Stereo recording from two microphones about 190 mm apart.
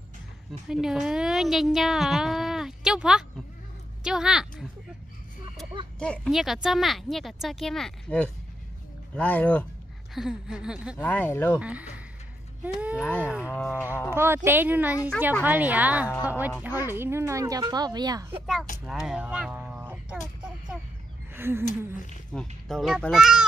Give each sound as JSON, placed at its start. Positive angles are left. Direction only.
{"t": 0.5, "sound": "a woman's voice", "side_deg": -5}
{"t": 5.9, "sound": "speech", "side_deg": 5}
{"t": 11.1, "sound": "speech", "side_deg": 10}
{"t": 11.6, "sound": "speech", "side_deg": -5}
{"t": 13.6, "sound": "speech", "side_deg": 5}
{"t": 14.1, "sound": "speech", "side_deg": -10}
{"t": 18.9, "sound": "a sound", "side_deg": 0}
{"t": 21.3, "sound": "a sound", "side_deg": -10}
{"t": 21.6, "sound": "speech", "side_deg": 40}
{"t": 22.3, "sound": "speech", "side_deg": 5}